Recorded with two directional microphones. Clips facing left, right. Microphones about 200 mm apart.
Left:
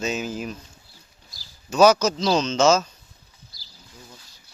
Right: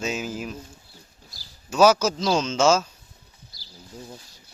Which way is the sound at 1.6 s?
5° right (ahead or behind).